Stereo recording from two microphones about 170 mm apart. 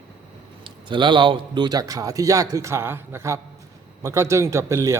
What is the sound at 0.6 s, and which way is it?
A man's voice, 30° right (ahead or behind).